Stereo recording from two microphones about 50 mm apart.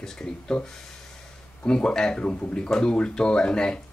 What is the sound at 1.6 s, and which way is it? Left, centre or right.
Mantra, centre.